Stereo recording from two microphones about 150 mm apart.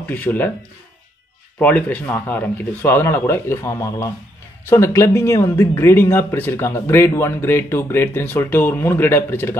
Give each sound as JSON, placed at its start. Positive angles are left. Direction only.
{"t": 0.0, "sound": "speech", "side_deg": 10}
{"t": 1.6, "sound": "speech", "side_deg": 10}